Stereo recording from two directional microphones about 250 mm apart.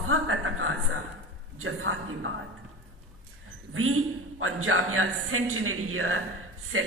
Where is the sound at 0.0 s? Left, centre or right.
Right.